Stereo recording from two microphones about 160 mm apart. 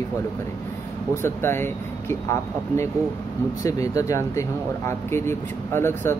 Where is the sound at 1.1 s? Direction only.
15° left (ahead or behind).